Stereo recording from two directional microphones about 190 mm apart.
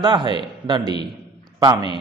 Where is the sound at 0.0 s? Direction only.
25° right (ahead or behind).